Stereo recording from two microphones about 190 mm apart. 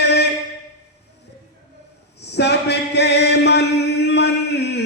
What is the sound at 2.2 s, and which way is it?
Chant, 60° left (ahead or behind).